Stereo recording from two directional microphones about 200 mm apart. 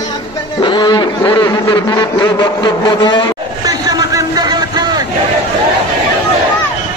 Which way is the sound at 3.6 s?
20° right (ahead or behind).